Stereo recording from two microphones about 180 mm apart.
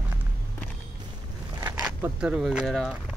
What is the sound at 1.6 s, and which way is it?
Speech, 10° right (ahead or behind).